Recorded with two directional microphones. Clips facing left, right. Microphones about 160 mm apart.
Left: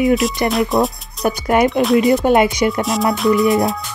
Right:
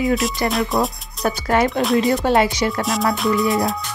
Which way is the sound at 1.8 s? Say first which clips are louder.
Left 4 dB; centre (ahead or behind).